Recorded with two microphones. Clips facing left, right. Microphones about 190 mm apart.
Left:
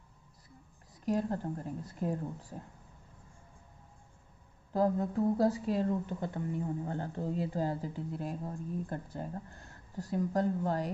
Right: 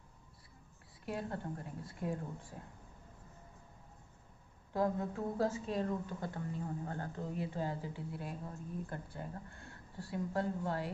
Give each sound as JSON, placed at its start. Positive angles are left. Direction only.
{"t": 1.0, "sound": "a woman's voice", "side_deg": 35}
{"t": 4.7, "sound": "a woman's voice", "side_deg": 35}